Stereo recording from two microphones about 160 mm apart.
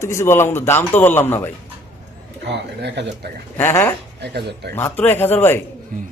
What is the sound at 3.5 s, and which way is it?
Speech, 15° left (ahead or behind).